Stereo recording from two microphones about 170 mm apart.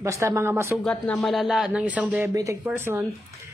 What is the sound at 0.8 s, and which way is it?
Speech, 5° left (ahead or behind).